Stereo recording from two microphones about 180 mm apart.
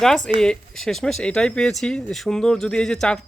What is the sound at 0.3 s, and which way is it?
Speech, 5° left (ahead or behind).